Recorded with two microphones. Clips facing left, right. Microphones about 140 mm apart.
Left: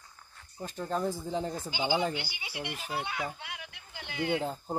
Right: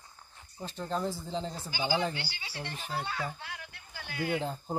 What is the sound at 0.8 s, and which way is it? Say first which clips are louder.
Speech: left 2 dB; 10° left (ahead or behind).